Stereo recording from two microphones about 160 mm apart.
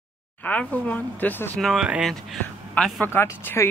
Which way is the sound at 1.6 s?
Centre (ahead or behind).